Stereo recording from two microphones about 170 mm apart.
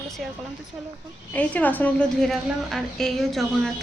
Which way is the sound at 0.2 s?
Centre (ahead or behind).